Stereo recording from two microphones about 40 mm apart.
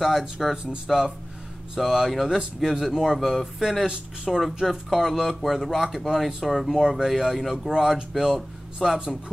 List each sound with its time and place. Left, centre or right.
0.2 s speech: centre
0.9 s speech: centre
3.2 s speech: centre
3.5 s speech: centre
4.6 s speech: centre